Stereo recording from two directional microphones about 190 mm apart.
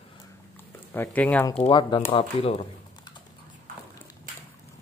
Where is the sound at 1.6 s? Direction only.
25° left (ahead or behind).